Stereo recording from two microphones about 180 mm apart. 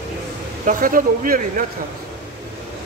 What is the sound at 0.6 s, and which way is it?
A man's voice, 50° right (ahead or behind).